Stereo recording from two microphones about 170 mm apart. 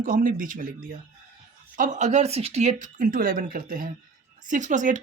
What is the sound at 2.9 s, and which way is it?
Speech, 55° right (ahead or behind).